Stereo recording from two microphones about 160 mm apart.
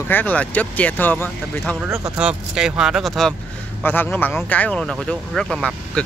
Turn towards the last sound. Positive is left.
turn(degrees=5)  # may be behind; listen again after turning